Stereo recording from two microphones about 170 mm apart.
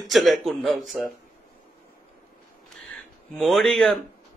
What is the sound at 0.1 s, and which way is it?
A man's voice, centre (ahead or behind).